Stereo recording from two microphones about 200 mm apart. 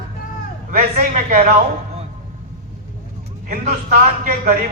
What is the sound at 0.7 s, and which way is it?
Speech, 40° right (ahead or behind).